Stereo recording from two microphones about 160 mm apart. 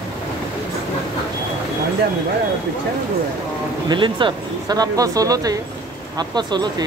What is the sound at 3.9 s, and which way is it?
Speech, 30° right (ahead or behind).